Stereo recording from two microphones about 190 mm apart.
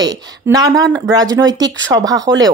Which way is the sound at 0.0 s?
20° right (ahead or behind).